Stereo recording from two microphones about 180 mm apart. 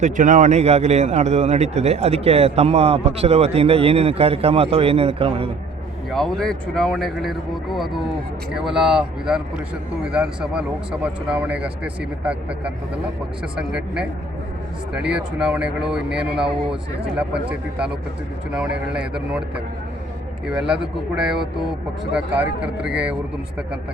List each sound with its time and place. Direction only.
0.0 s a man's voice: 45° right (ahead or behind)
6.1 s speech: centre (ahead or behind)